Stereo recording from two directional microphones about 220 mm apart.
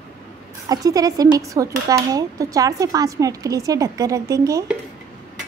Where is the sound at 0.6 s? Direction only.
15° right (ahead or behind).